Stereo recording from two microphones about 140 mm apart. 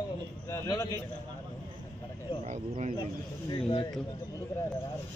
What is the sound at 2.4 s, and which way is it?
Speech, 55° right (ahead or behind).